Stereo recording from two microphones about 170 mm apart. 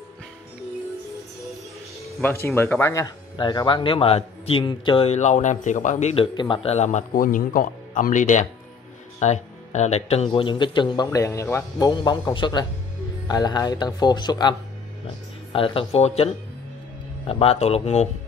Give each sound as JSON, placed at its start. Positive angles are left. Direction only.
{"t": 2.4, "sound": "speech", "side_deg": 15}
{"t": 6.3, "sound": "a man's voice", "side_deg": 30}
{"t": 15.5, "sound": "speech", "side_deg": 35}
{"t": 17.3, "sound": "speech", "side_deg": 35}